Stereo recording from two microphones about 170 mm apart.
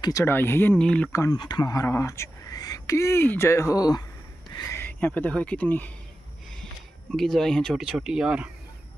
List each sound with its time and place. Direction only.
0.0 s speech: 15° left (ahead or behind)
1.2 s speech: 25° left (ahead or behind); by 8.5 s 5° right (ahead or behind)